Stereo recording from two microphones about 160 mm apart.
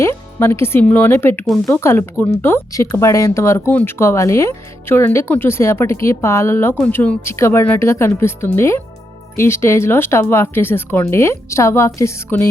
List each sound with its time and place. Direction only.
0.0 s speech: 15° left (ahead or behind)